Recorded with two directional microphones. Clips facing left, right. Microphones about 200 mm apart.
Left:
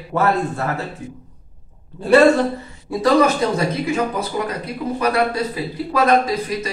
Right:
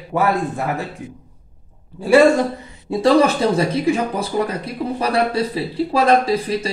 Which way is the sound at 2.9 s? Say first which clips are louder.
Right 1 dB; 30° right (ahead or behind).